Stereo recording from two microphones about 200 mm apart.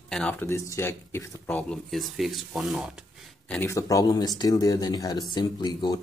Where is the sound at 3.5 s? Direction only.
10° left (ahead or behind).